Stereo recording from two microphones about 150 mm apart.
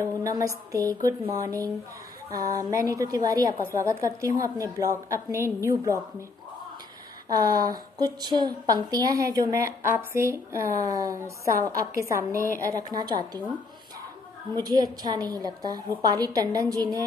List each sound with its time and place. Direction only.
0.0 s a woman's voice: 20° right (ahead or behind)
7.2 s a woman's voice: 25° right (ahead or behind)
14.5 s a woman's voice: 25° right (ahead or behind)